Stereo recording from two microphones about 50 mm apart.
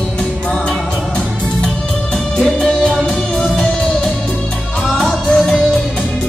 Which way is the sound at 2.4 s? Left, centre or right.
Centre.